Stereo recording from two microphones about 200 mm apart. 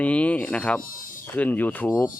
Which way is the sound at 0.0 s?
5° left (ahead or behind).